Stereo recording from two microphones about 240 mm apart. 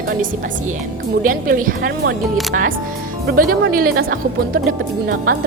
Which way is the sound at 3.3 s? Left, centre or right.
Right.